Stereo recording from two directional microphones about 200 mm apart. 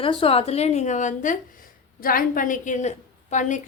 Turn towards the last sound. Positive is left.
turn(degrees=35)  # may be behind; listen again after turning